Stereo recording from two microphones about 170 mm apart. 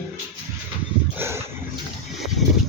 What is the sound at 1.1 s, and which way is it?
Dog, 15° right (ahead or behind).